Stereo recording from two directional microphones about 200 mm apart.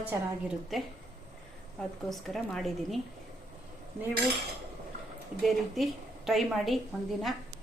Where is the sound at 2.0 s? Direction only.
Centre (ahead or behind).